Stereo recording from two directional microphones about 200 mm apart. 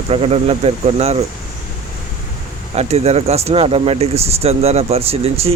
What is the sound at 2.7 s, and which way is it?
Speech, 35° right (ahead or behind).